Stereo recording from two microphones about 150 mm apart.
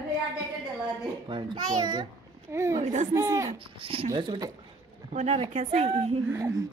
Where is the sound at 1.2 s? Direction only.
30° right (ahead or behind).